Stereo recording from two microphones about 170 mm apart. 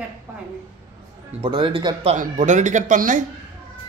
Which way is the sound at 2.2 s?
45° right (ahead or behind).